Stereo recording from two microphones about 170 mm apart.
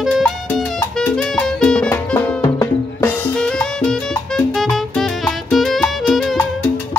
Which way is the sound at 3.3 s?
5° left (ahead or behind).